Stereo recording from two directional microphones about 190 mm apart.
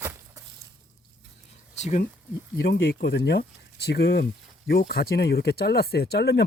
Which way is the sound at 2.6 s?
55° left (ahead or behind).